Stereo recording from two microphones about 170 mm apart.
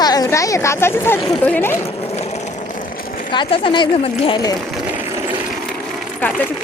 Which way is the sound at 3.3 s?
30° left (ahead or behind).